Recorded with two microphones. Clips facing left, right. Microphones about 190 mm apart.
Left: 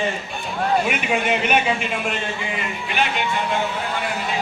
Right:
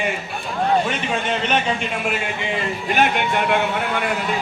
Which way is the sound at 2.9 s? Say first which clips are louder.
Right 4 dB; 50° right (ahead or behind).